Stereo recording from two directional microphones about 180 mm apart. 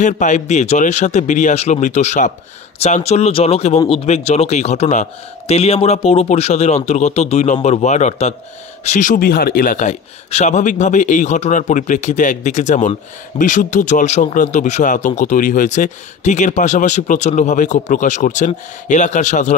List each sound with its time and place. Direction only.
0.0 s speech: 40° left (ahead or behind)